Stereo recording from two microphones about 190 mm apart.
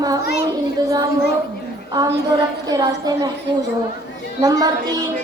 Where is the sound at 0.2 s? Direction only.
55° left (ahead or behind).